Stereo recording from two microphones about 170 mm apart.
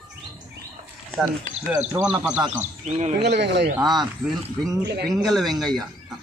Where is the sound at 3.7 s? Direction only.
25° right (ahead or behind).